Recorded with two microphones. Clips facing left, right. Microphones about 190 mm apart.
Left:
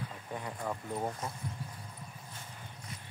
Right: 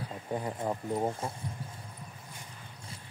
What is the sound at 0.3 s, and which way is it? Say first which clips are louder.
Speech: right 6 dB; 30° right (ahead or behind).